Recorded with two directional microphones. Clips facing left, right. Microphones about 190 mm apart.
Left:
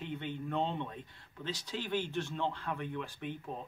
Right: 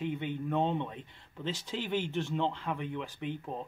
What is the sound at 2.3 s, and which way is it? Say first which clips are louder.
Speech: right 4 dB; 15° right (ahead or behind).